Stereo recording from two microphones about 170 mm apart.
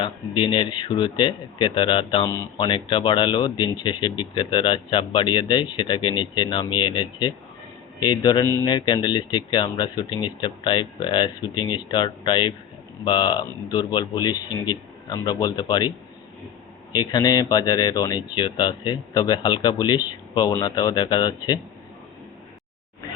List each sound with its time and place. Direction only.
0.0 s speech: 30° left (ahead or behind)
16.9 s speech: 25° left (ahead or behind)